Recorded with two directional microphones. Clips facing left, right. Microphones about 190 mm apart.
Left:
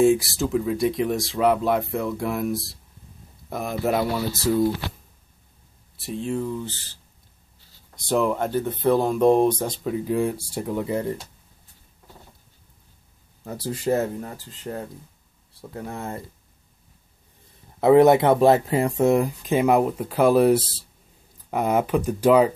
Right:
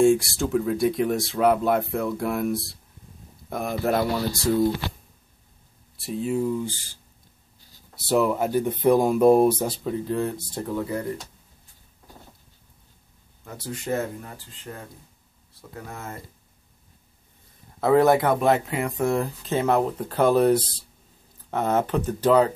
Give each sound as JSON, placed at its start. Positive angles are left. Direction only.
{"t": 0.0, "sound": "speech", "side_deg": 0}
{"t": 5.9, "sound": "speech", "side_deg": 0}
{"t": 9.8, "sound": "speech", "side_deg": 10}
{"t": 13.4, "sound": "speech", "side_deg": 35}
{"t": 15.9, "sound": "speech", "side_deg": 30}
{"t": 17.7, "sound": "speech", "side_deg": 20}
{"t": 19.0, "sound": "speech", "side_deg": 15}